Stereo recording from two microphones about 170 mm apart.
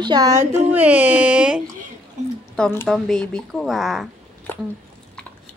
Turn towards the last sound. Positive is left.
turn(degrees=0)  # may be behind; listen again after turning